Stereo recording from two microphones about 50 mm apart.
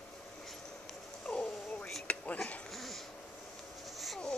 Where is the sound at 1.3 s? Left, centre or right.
Left.